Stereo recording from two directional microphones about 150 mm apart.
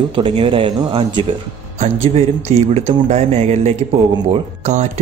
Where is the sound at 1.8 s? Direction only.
50° right (ahead or behind).